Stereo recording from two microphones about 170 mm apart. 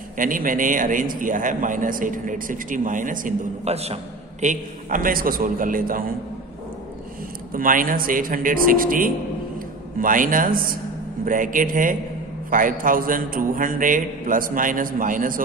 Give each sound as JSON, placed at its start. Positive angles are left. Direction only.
{"t": 0.2, "sound": "a man's voice", "side_deg": -50}
{"t": 7.5, "sound": "a man's voice", "side_deg": -55}